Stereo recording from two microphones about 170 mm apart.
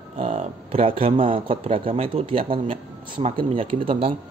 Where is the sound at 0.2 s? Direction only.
40° right (ahead or behind).